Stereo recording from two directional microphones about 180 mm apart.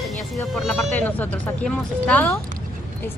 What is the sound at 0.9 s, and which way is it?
Speech, 10° left (ahead or behind).